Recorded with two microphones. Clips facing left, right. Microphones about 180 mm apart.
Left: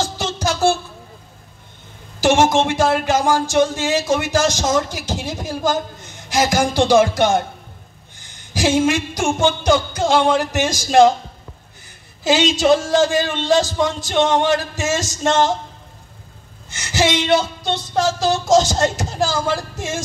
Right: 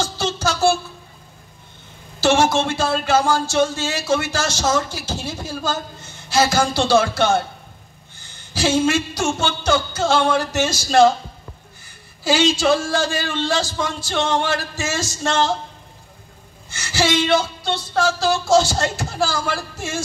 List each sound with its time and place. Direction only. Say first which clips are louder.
0.0 s music: even; 15° left (ahead or behind)
2.1 s speech: left 2 dB; 15° left (ahead or behind)
8.2 s music: left 2 dB; 15° left (ahead or behind)
12.2 s a man's voice: left 2 dB; 20° left (ahead or behind)
16.7 s speech: left 1 dB; 20° left (ahead or behind)